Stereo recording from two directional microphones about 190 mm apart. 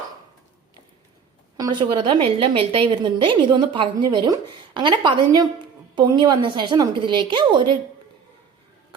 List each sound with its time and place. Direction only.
1.5 s a woman's voice: 20° right (ahead or behind)